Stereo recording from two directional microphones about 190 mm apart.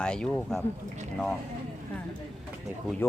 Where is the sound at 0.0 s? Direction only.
5° left (ahead or behind).